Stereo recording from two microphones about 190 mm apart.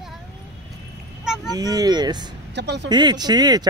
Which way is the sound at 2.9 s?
25° right (ahead or behind).